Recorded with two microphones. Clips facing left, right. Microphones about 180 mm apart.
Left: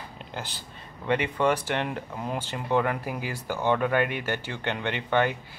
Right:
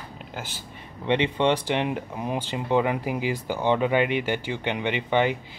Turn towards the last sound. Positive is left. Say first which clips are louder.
# right 2 dB
turn(degrees=-15)  # may be behind; listen again after turning